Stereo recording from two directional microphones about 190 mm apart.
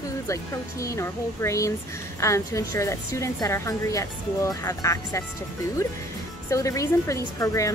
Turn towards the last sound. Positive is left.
turn(degrees=15)  # may be behind; listen again after turning